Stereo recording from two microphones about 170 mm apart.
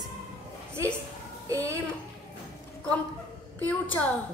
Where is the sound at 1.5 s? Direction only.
20° right (ahead or behind).